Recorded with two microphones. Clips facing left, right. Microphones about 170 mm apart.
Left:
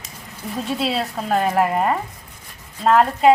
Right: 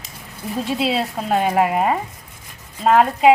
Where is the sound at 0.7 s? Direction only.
Centre (ahead or behind).